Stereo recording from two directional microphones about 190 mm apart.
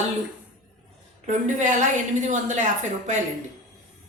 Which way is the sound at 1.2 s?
40° right (ahead or behind).